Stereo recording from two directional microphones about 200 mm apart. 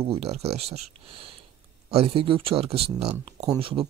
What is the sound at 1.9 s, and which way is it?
Speech, 25° right (ahead or behind).